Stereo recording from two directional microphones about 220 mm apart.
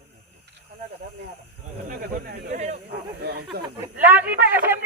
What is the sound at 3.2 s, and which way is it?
Snake, 50° right (ahead or behind).